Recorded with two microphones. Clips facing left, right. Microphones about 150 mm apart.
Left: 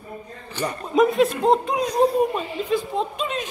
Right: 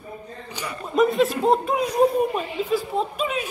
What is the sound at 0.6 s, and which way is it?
Speech, 15° right (ahead or behind).